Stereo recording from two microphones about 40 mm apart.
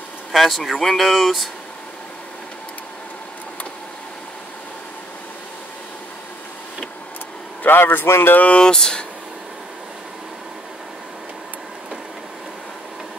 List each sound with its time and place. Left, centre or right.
0.3 s speech: centre
7.6 s a man's voice: left
8.5 s speech: centre